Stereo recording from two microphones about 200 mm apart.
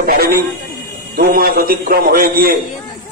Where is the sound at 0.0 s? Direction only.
50° right (ahead or behind).